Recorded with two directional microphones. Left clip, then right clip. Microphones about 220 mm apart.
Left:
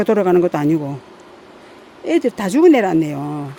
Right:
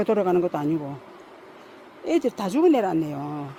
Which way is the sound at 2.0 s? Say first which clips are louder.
Left 6 dB; 15° left (ahead or behind).